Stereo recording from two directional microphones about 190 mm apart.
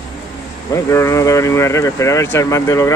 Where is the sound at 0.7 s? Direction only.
15° left (ahead or behind).